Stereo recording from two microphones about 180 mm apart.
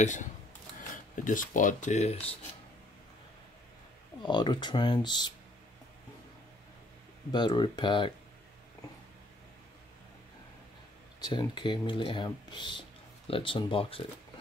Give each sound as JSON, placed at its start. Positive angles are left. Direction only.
{"t": 0.0, "sound": "speech", "side_deg": 45}
{"t": 4.2, "sound": "speech", "side_deg": 25}
{"t": 7.3, "sound": "speech", "side_deg": 25}
{"t": 11.1, "sound": "speech", "side_deg": 25}